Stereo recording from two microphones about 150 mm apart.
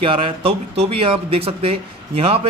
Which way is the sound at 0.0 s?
35° right (ahead or behind).